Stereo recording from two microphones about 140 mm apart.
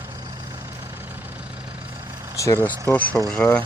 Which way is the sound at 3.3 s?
10° left (ahead or behind).